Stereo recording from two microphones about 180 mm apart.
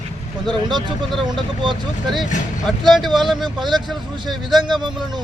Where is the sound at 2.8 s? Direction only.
Centre (ahead or behind).